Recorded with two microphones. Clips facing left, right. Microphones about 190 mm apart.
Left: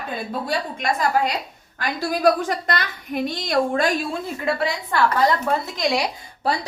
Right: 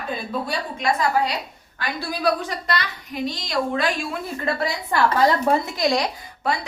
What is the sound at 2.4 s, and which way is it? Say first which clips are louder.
A woman's voice: left 2 dB; 50° left (ahead or behind).